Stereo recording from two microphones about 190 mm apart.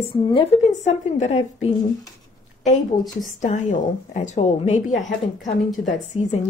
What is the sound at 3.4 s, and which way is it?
A woman's voice, 40° left (ahead or behind).